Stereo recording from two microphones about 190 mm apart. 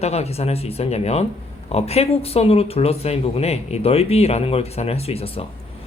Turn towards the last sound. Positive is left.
turn(degrees=30)  # may be behind; listen again after turning